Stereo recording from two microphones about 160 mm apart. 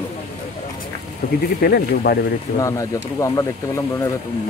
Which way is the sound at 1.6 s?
70° left (ahead or behind).